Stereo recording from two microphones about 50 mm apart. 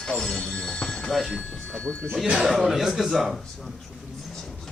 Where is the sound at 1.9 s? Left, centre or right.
Right.